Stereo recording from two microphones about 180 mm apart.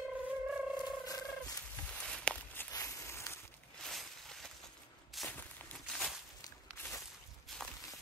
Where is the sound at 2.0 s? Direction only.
5° left (ahead or behind).